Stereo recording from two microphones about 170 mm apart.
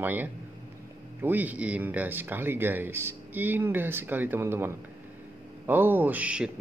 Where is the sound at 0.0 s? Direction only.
10° right (ahead or behind).